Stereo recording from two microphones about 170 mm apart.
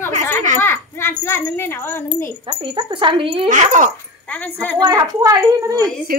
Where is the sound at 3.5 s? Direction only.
50° right (ahead or behind).